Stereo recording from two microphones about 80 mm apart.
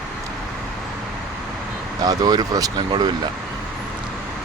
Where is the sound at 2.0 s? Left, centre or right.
Right.